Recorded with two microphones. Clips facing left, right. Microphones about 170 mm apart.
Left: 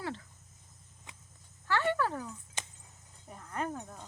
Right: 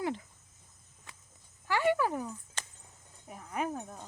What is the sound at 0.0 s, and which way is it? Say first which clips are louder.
Speech: right 5 dB; 15° right (ahead or behind).